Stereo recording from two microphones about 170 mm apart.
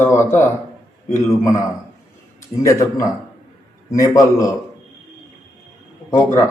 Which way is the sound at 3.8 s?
20° left (ahead or behind).